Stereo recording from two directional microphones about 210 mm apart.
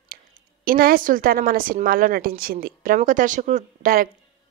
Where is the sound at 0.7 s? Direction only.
45° right (ahead or behind).